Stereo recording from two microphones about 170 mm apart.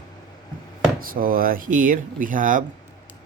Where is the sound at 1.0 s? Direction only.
55° right (ahead or behind).